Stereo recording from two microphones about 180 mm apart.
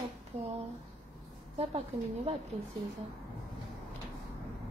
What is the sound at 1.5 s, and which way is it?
Speech, 35° right (ahead or behind).